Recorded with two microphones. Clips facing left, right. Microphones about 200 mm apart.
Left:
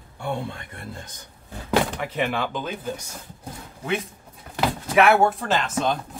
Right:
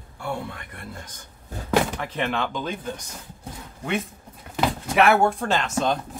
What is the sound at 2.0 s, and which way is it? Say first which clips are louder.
Speech: left 1 dB; 10° left (ahead or behind).